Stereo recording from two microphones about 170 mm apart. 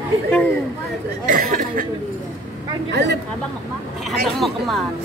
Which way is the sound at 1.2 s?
50° right (ahead or behind).